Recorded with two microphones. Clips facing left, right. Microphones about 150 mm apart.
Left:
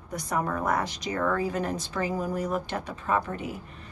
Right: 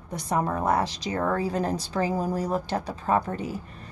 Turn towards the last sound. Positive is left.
turn(degrees=-35)  # may be behind; listen again after turning